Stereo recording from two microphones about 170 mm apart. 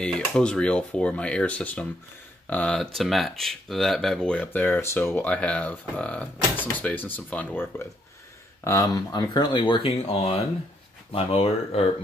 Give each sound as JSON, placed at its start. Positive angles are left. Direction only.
{"t": 0.0, "sound": "speech", "side_deg": 5}